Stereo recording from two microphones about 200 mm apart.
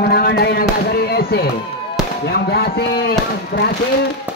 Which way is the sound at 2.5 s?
50° left (ahead or behind).